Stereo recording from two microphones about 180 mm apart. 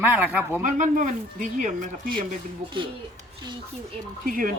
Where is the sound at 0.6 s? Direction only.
45° right (ahead or behind).